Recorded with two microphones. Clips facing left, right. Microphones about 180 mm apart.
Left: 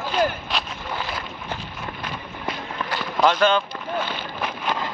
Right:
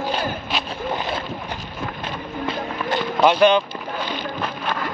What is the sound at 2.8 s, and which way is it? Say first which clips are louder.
Run: right 3 dB; 20° right (ahead or behind).